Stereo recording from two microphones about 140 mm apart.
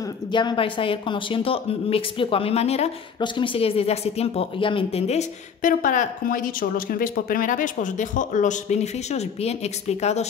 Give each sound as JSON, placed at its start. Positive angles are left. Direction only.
{"t": 0.3, "sound": "a woman's voice", "side_deg": 35}
{"t": 3.2, "sound": "speech", "side_deg": 35}
{"t": 5.6, "sound": "speech", "side_deg": 75}